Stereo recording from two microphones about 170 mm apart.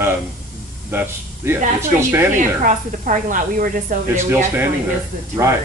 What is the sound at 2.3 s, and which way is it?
Speech, 50° right (ahead or behind).